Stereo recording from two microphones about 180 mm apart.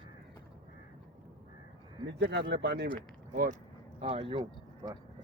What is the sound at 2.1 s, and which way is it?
Speech, 70° right (ahead or behind).